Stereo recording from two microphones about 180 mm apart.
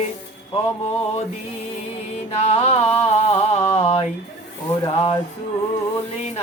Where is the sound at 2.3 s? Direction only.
35° left (ahead or behind).